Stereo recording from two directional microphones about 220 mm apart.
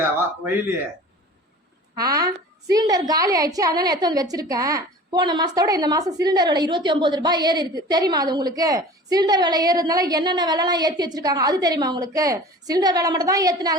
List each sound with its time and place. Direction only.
2.0 s a woman's voice: 15° right (ahead or behind)